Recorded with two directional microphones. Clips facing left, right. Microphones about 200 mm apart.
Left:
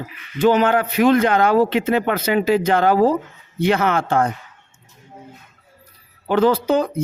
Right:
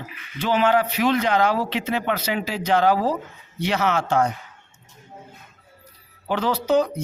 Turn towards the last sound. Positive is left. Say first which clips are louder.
# left 4 dB
turn(degrees=55)  # may be behind; listen again after turning